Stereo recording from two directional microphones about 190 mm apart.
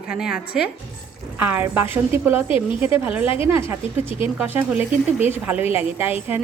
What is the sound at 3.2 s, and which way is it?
Speech, 30° left (ahead or behind).